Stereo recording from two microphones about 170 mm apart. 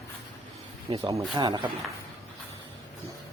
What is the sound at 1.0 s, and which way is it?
Speech, 20° right (ahead or behind).